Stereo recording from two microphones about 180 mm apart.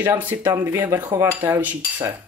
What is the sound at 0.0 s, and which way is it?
Speech, 10° right (ahead or behind).